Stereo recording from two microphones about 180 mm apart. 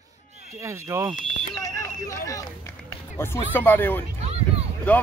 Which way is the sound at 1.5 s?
20° left (ahead or behind).